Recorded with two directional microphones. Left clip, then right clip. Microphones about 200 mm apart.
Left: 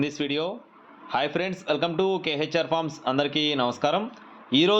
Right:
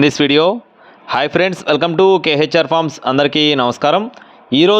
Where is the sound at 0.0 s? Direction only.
55° right (ahead or behind).